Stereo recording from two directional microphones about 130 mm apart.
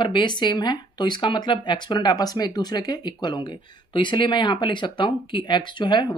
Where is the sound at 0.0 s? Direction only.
35° left (ahead or behind).